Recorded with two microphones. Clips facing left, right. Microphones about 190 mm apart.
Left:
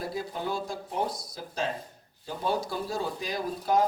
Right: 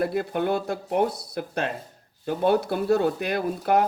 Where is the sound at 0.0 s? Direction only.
60° right (ahead or behind).